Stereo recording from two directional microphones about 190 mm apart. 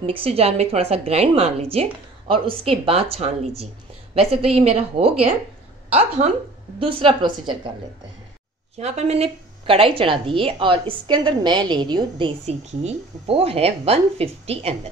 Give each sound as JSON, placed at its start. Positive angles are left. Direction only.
{"t": 0.0, "sound": "a woman's voice", "side_deg": -30}
{"t": 6.8, "sound": "a woman's voice", "side_deg": -30}
{"t": 8.7, "sound": "a woman's voice", "side_deg": -35}